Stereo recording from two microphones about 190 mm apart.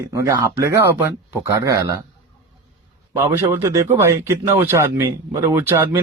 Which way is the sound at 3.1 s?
15° right (ahead or behind).